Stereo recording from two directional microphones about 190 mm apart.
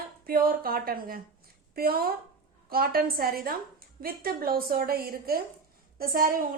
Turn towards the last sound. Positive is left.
turn(degrees=-50)  # may be behind; listen again after turning